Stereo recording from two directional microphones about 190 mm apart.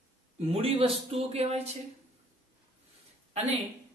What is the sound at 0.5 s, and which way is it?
A man's voice, 30° right (ahead or behind).